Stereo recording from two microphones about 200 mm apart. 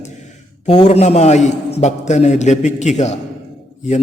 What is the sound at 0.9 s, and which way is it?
A man's voice, 35° left (ahead or behind).